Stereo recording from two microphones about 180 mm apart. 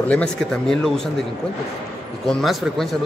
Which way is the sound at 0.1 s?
5° left (ahead or behind).